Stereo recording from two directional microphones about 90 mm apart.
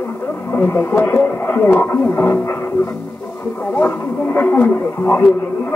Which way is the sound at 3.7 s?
20° left (ahead or behind).